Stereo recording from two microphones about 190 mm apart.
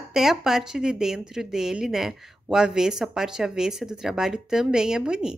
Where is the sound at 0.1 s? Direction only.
Centre (ahead or behind).